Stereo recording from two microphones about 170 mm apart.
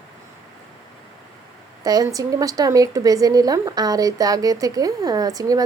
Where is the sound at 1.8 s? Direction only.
20° right (ahead or behind).